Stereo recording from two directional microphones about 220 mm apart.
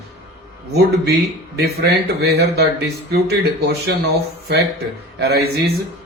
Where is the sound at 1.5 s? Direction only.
50° right (ahead or behind).